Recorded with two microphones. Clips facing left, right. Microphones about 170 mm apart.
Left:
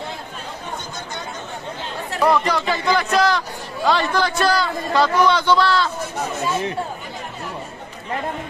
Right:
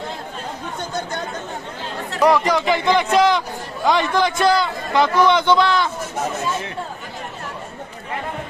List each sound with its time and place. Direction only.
2.2 s a man's voice: 15° right (ahead or behind)